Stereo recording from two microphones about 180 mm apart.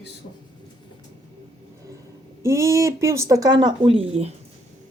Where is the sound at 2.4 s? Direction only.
15° right (ahead or behind); by 4.3 s 35° right (ahead or behind).